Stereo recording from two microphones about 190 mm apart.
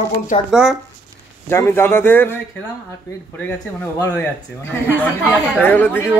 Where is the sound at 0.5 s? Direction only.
5° right (ahead or behind).